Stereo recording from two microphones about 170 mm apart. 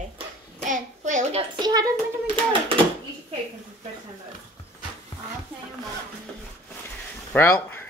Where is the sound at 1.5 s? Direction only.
25° right (ahead or behind).